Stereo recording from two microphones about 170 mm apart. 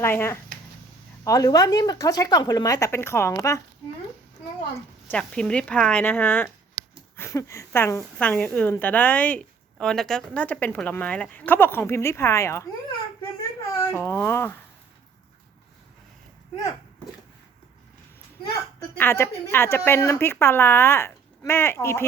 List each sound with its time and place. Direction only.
0.0 s a woman's voice: 15° left (ahead or behind)
5.1 s a woman's voice: 5° left (ahead or behind)
13.7 s speech: 15° left (ahead or behind)
18.9 s a woman's voice: 15° left (ahead or behind)